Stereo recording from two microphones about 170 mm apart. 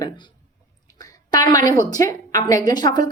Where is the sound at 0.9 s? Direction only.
25° left (ahead or behind).